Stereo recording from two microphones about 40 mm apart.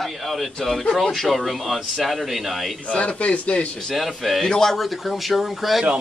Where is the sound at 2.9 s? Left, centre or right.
Left.